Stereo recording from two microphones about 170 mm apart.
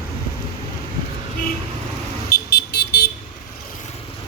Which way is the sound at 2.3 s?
65° left (ahead or behind).